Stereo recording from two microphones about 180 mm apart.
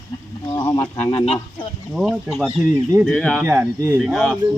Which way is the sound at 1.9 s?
Centre (ahead or behind).